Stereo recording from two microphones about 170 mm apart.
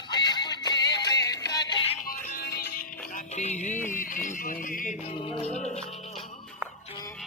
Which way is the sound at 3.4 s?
45° left (ahead or behind).